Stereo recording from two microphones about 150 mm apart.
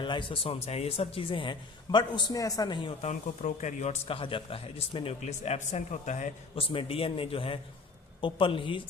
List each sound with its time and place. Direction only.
0.0 s speech: 35° left (ahead or behind)
3.0 s speech: 55° left (ahead or behind)
6.6 s speech: 40° left (ahead or behind)